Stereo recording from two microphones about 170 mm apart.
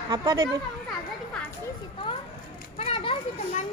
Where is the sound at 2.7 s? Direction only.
35° left (ahead or behind).